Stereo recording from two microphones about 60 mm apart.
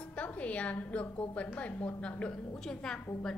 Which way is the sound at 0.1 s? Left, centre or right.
Left.